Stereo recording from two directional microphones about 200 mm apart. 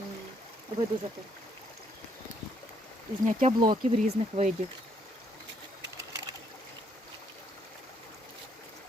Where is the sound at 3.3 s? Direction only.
40° right (ahead or behind).